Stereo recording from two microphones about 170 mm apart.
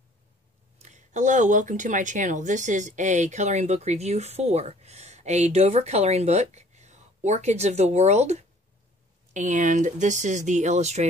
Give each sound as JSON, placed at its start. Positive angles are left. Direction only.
{"t": 0.8, "sound": "speech", "side_deg": -45}